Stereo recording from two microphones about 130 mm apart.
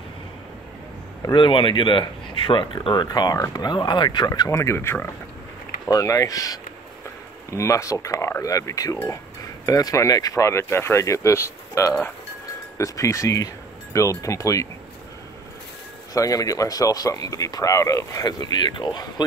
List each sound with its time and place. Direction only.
1.2 s speech: 40° left (ahead or behind)
16.1 s speech: 25° left (ahead or behind)